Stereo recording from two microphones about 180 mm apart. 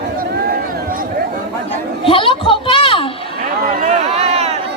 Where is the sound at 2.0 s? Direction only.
30° left (ahead or behind).